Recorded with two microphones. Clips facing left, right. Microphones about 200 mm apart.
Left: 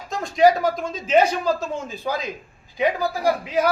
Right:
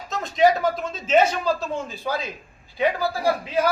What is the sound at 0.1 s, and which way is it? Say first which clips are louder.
A man's voice: left 2 dB; 10° left (ahead or behind).